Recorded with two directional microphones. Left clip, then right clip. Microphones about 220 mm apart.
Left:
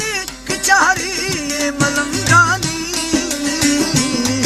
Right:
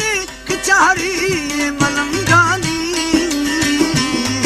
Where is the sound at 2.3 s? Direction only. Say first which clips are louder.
Left 1 dB; 20° right (ahead or behind).